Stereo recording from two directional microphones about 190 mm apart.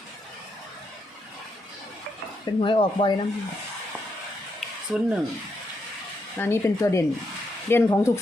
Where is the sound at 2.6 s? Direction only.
25° left (ahead or behind).